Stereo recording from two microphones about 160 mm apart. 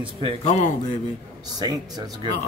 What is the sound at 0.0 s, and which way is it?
Speech, 35° right (ahead or behind).